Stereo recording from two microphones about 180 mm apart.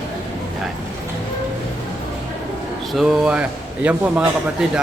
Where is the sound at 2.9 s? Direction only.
Centre (ahead or behind).